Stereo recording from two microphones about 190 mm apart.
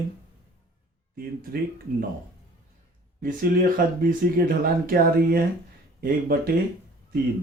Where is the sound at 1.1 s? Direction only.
50° right (ahead or behind).